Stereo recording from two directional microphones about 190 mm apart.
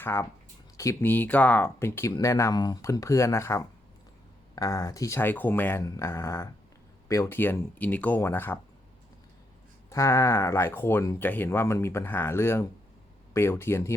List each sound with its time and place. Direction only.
0.0 s speech: 15° left (ahead or behind)
9.9 s speech: 15° left (ahead or behind)